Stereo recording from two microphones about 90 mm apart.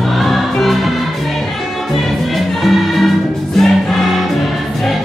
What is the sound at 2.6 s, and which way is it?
Music, centre (ahead or behind).